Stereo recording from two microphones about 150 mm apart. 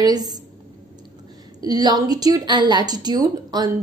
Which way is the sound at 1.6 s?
25° right (ahead or behind).